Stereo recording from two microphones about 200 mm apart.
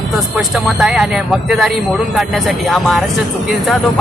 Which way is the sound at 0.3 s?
Centre (ahead or behind).